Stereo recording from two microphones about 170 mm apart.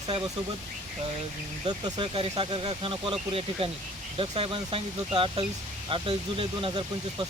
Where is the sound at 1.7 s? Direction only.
25° right (ahead or behind).